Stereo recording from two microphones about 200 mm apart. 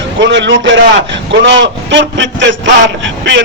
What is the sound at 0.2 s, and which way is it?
A man's voice, 65° right (ahead or behind).